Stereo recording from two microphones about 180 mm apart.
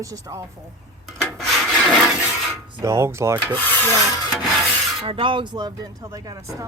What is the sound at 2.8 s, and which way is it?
Speech, 15° right (ahead or behind).